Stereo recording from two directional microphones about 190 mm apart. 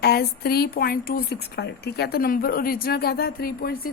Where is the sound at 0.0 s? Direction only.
55° left (ahead or behind).